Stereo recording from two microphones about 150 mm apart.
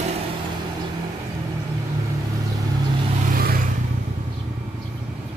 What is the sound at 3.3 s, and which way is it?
Vehicle, 85° right.